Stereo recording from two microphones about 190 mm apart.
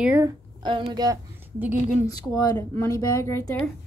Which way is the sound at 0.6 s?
25° right (ahead or behind).